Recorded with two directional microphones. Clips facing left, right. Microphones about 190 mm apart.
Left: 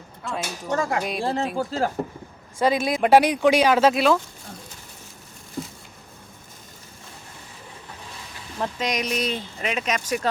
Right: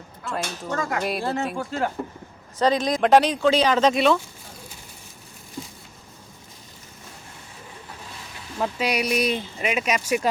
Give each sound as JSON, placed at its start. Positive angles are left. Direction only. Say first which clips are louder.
{"t": 0.3, "sound": "speech", "louder": "right 1 dB", "side_deg": 5}
{"t": 0.7, "sound": "speech", "louder": "left 2 dB", "side_deg": 25}
{"t": 2.6, "sound": "speech", "louder": "even", "side_deg": 10}
{"t": 8.5, "sound": "speech", "louder": "right 2 dB", "side_deg": -5}